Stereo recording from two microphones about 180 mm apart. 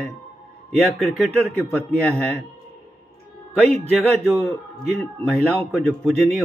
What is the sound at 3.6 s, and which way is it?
Speech, 35° right (ahead or behind).